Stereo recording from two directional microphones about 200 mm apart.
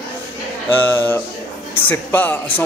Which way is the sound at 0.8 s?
10° left (ahead or behind).